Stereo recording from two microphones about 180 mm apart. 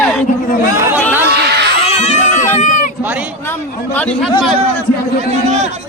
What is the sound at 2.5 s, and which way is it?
Sheep, 45° left (ahead or behind).